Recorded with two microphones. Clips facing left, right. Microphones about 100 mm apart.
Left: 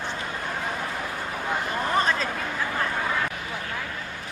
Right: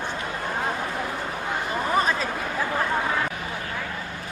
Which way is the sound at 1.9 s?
10° right (ahead or behind).